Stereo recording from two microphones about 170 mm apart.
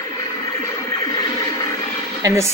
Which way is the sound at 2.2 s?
15° right (ahead or behind).